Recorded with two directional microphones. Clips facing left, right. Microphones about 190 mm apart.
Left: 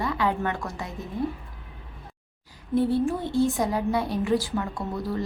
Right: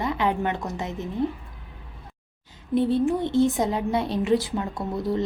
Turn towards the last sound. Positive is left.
turn(degrees=-20)  # may be behind; listen again after turning